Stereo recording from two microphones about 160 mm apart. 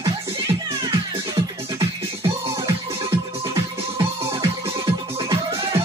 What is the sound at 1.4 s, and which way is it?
Music, 30° right (ahead or behind).